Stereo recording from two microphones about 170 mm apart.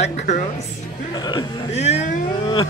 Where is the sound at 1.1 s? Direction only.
25° left (ahead or behind).